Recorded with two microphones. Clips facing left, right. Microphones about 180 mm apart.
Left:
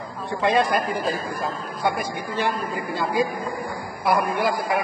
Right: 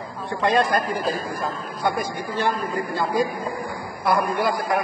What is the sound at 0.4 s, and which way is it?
Speech, 20° left (ahead or behind).